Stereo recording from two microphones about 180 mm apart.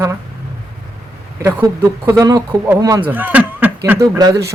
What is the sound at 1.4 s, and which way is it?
Speech, 15° right (ahead or behind).